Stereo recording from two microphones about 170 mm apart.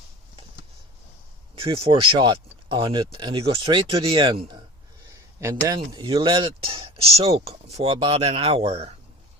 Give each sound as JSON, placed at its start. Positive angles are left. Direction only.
{"t": 1.5, "sound": "speech", "side_deg": -35}
{"t": 5.0, "sound": "a sound", "side_deg": -20}
{"t": 5.9, "sound": "speech", "side_deg": -25}